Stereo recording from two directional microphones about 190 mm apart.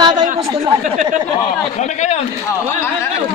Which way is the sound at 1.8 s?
35° left (ahead or behind).